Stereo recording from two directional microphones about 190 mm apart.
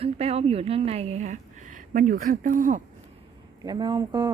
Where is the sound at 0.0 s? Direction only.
30° right (ahead or behind).